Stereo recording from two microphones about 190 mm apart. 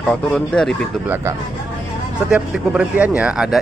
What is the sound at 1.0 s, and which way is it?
Speech, 10° right (ahead or behind).